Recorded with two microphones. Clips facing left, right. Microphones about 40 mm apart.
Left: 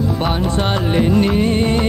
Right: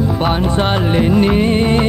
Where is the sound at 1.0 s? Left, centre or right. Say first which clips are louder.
Right 2 dB; centre.